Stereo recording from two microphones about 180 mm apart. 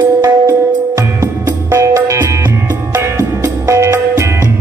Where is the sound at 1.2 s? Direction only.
15° right (ahead or behind).